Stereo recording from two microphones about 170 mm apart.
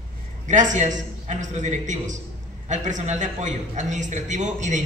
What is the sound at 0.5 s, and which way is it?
Speech, 45° right (ahead or behind).